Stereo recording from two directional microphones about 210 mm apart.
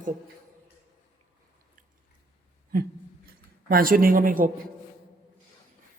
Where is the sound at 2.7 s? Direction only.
45° right (ahead or behind).